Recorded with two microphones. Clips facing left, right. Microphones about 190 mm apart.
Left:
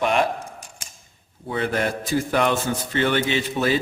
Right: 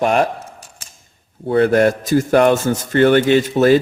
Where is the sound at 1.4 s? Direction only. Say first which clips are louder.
Right 11 dB; 55° right (ahead or behind).